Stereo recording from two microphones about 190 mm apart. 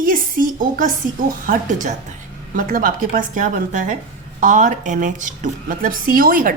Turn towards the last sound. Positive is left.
turn(degrees=-50)  # may be behind; listen again after turning